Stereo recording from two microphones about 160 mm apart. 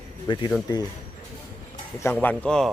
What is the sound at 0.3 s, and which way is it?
Speech, 30° left (ahead or behind).